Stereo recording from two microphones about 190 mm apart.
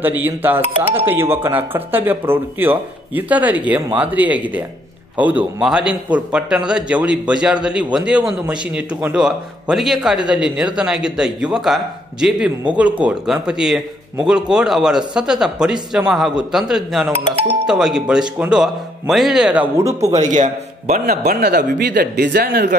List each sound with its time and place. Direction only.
0.0 s speech: 10° right (ahead or behind)
0.6 s speech: 30° right (ahead or behind)
0.9 s a man's voice: 10° right (ahead or behind)
17.2 s speech: 30° right (ahead or behind)
17.6 s a man's voice: centre (ahead or behind)
20.2 s speech: 40° right (ahead or behind)